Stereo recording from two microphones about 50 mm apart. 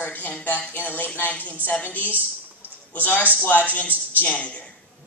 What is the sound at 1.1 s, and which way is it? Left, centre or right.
Speech, left.